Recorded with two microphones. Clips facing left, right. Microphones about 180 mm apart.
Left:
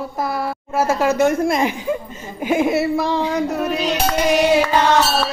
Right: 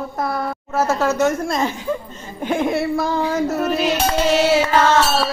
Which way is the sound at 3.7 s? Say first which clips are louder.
Right 2 dB; 5° right (ahead or behind).